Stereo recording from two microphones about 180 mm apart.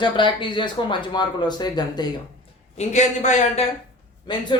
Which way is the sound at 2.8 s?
40° left (ahead or behind).